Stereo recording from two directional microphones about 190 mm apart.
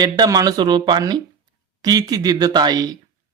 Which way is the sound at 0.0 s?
20° right (ahead or behind).